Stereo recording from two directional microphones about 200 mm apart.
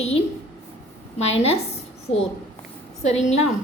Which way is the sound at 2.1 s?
85° left.